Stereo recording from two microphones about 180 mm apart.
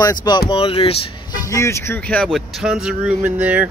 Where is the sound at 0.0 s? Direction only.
20° left (ahead or behind).